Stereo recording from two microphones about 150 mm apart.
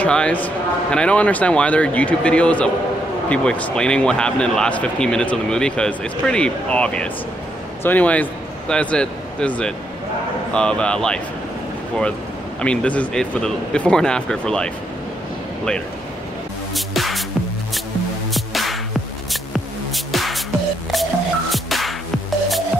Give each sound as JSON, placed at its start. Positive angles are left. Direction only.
{"t": 0.0, "sound": "a man's voice", "side_deg": 10}
{"t": 12.6, "sound": "speech", "side_deg": 10}
{"t": 16.7, "sound": "music", "side_deg": 0}
{"t": 18.3, "sound": "music", "side_deg": 0}
{"t": 20.1, "sound": "music", "side_deg": 0}